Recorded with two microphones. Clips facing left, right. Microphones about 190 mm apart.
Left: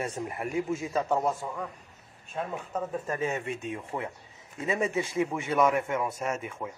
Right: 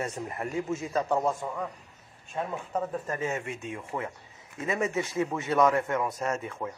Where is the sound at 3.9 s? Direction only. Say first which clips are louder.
Right 1 dB; centre (ahead or behind).